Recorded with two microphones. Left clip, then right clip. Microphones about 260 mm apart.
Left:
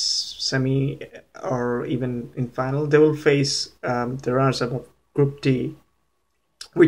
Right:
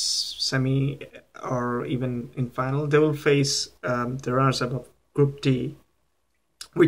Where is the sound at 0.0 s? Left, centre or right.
Right.